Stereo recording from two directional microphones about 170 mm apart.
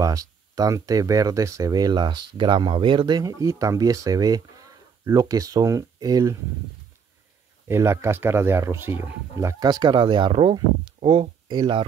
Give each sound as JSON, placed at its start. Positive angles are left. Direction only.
{"t": 0.0, "sound": "speech", "side_deg": -20}
{"t": 7.6, "sound": "speech", "side_deg": -15}